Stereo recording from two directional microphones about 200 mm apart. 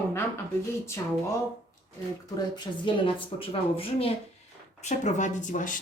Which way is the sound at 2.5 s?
25° left (ahead or behind).